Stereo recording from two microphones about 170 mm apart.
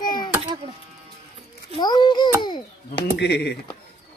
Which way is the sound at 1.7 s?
25° left (ahead or behind).